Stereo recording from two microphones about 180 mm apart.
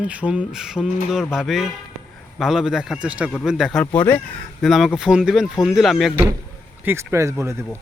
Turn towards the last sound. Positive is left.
turn(degrees=-15)  # may be behind; listen again after turning